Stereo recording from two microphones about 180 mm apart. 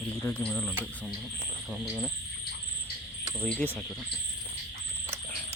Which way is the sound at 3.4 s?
10° left (ahead or behind).